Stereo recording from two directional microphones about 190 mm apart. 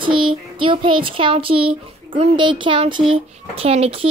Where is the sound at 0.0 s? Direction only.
25° right (ahead or behind).